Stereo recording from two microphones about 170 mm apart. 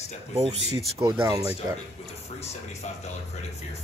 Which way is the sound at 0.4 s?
35° right (ahead or behind).